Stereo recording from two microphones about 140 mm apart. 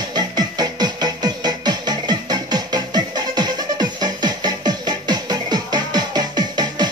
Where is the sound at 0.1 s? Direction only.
30° right (ahead or behind).